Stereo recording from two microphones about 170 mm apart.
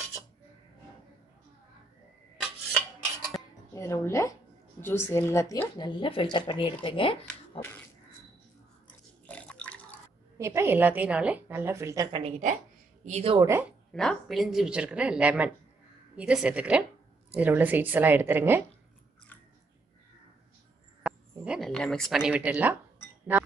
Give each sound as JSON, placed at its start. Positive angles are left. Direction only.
{"t": 3.7, "sound": "speech", "side_deg": 15}
{"t": 9.2, "sound": "a sound", "side_deg": 5}
{"t": 10.3, "sound": "a woman's voice", "side_deg": -15}
{"t": 12.2, "sound": "a woman's voice", "side_deg": -40}
{"t": 13.4, "sound": "a woman's voice", "side_deg": -15}
{"t": 13.9, "sound": "a woman's voice", "side_deg": 0}
{"t": 21.0, "sound": "speech", "side_deg": 0}